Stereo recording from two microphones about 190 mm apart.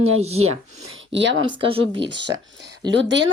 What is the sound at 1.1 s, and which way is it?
Speech, 75° right (ahead or behind).